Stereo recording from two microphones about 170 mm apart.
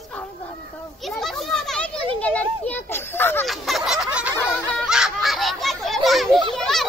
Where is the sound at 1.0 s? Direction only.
Centre (ahead or behind).